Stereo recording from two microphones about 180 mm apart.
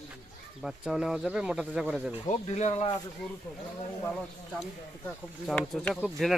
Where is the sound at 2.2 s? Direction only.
40° left (ahead or behind).